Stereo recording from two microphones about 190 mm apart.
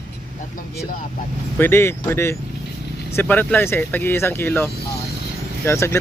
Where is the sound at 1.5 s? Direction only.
10° left (ahead or behind).